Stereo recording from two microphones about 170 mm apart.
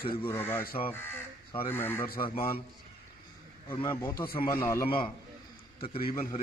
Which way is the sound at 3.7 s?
15° left (ahead or behind).